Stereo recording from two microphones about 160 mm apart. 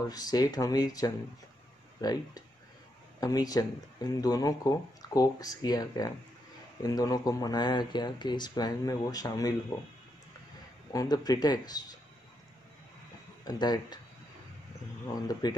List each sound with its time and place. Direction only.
0.1 s speech: 25° left (ahead or behind)
10.9 s speech: 20° left (ahead or behind)
13.4 s speech: 25° left (ahead or behind)
15.4 s speech: 25° left (ahead or behind)